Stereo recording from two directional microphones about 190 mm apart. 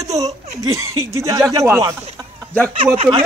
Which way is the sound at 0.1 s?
20° right (ahead or behind).